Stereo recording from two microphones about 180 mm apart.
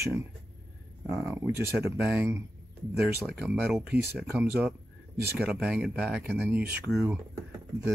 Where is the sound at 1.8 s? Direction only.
10° right (ahead or behind).